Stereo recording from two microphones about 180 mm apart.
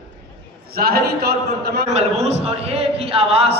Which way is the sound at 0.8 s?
60° right (ahead or behind).